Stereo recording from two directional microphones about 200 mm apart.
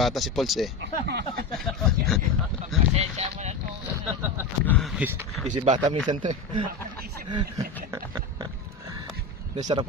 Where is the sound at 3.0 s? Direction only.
35° right (ahead or behind).